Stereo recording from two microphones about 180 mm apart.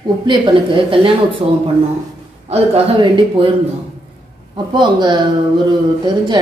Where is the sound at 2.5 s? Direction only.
30° right (ahead or behind).